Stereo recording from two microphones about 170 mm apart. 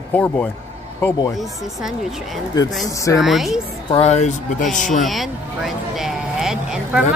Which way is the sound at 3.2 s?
Centre (ahead or behind).